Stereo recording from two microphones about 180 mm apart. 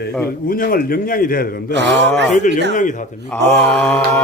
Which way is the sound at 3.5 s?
10° left (ahead or behind).